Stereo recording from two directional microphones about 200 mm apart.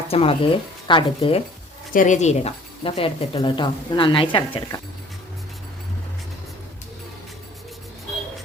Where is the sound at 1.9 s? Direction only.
40° left (ahead or behind).